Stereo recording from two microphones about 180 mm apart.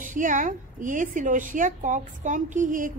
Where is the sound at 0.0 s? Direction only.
45° right (ahead or behind).